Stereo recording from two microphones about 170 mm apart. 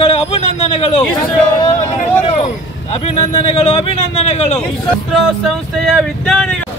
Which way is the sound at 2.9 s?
35° left (ahead or behind).